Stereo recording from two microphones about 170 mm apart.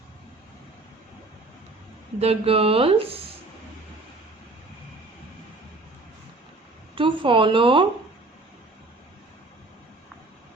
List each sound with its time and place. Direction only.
2.1 s speech: 35° right (ahead or behind)
6.9 s speech: 30° right (ahead or behind)